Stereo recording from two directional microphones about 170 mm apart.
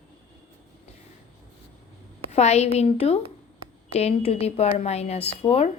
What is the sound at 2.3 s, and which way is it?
A woman's voice, 40° left (ahead or behind).